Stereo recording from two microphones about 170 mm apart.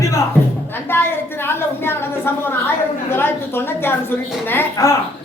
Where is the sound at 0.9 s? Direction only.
15° left (ahead or behind).